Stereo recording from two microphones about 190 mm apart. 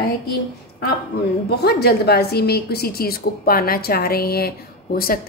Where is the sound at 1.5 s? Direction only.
55° left (ahead or behind).